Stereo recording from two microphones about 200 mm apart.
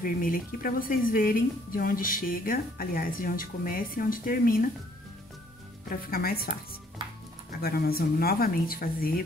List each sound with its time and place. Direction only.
0.0 s speech: 45° left (ahead or behind)
5.9 s speech: 45° left (ahead or behind)
7.6 s speech: 50° left (ahead or behind)